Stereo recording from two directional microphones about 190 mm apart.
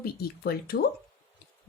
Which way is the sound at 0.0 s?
55° left (ahead or behind).